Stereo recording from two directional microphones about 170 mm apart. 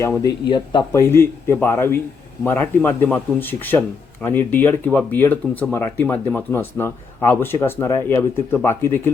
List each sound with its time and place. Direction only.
0.4 s speech: 25° left (ahead or behind)